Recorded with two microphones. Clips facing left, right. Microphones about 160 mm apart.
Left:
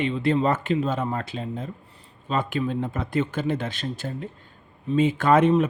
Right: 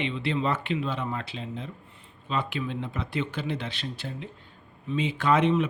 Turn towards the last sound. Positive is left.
turn(degrees=45)  # may be behind; listen again after turning